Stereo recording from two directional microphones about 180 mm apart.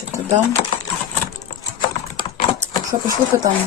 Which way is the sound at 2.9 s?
20° right (ahead or behind).